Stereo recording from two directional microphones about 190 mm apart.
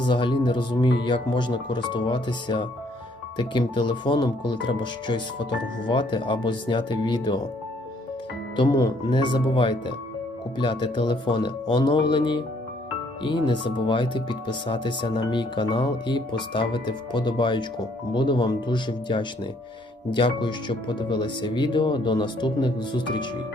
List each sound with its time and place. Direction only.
0.0 s speech: 25° left (ahead or behind)
8.5 s speech: 20° left (ahead or behind)